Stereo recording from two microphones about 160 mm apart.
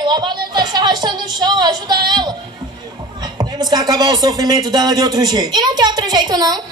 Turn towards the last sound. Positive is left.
turn(degrees=-25)  # may be behind; listen again after turning